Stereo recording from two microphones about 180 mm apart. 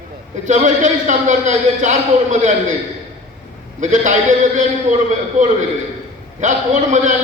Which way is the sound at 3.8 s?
45° right (ahead or behind).